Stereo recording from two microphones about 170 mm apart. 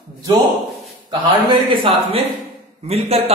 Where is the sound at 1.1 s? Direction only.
25° right (ahead or behind).